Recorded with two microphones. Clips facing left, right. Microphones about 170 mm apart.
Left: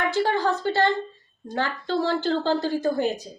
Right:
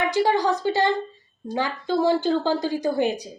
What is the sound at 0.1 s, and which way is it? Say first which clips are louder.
A woman's voice: right 2 dB; 15° right (ahead or behind).